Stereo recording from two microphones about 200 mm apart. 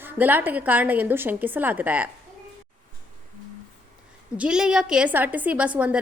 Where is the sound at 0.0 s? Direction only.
10° right (ahead or behind).